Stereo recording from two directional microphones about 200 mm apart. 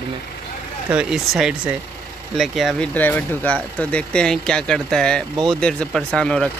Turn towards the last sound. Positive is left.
turn(degrees=5)  # may be behind; listen again after turning